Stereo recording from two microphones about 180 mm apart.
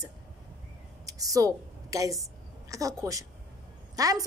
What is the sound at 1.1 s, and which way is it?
A woman's voice, 20° right (ahead or behind).